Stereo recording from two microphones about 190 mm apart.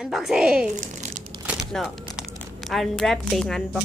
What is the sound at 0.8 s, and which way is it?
Crumpling, 40° right (ahead or behind).